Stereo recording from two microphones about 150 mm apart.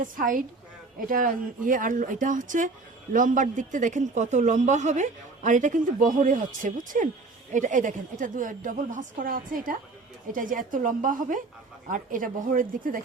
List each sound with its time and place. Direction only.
0.0 s speech: 65° right (ahead or behind)